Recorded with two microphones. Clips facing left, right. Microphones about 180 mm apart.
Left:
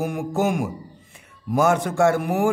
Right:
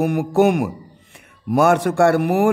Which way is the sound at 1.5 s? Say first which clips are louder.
Right 4 dB; 65° right (ahead or behind).